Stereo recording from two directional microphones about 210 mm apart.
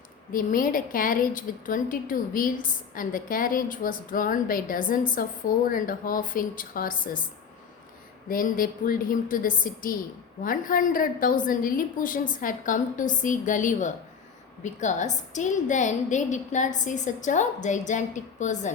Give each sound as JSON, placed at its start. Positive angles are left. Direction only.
{"t": 0.3, "sound": "a woman's voice", "side_deg": 40}
{"t": 8.3, "sound": "a woman's voice", "side_deg": 40}